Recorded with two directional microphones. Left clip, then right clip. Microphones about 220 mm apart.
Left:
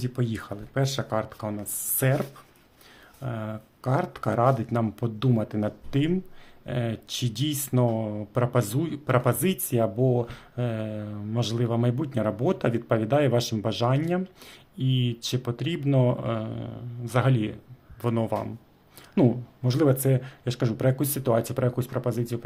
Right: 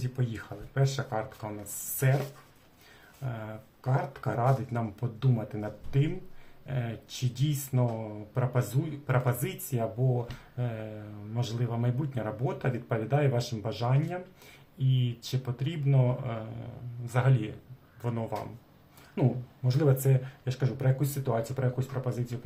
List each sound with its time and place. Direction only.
0.0 s speech: 45° left (ahead or behind)
3.2 s speech: 45° left (ahead or behind)